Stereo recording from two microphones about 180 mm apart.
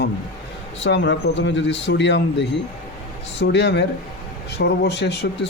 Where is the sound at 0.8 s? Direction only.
85° left.